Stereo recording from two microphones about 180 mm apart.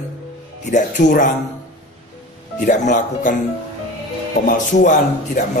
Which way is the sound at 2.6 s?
45° left (ahead or behind).